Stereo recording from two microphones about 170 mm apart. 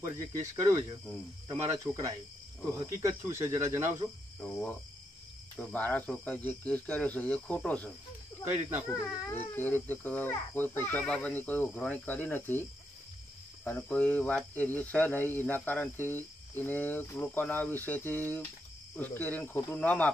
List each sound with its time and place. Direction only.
0.0 s speech: 20° right (ahead or behind)
4.4 s cricket: 5° left (ahead or behind)
5.6 s speech: 10° left (ahead or behind)
13.7 s speech: 5° left (ahead or behind)